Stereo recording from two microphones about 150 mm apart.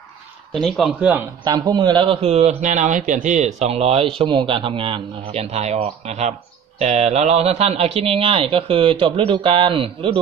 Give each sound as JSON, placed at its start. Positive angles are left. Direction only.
{"t": 0.6, "sound": "speech", "side_deg": 0}
{"t": 1.4, "sound": "a man's voice", "side_deg": -30}